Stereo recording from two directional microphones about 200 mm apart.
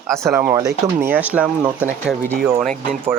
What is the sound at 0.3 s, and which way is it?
Speech, 15° right (ahead or behind).